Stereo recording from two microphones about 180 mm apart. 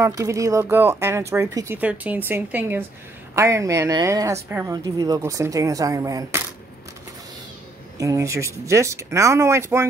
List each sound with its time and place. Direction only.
0.0 s a woman's voice: 15° right (ahead or behind)
8.0 s speech: 15° right (ahead or behind)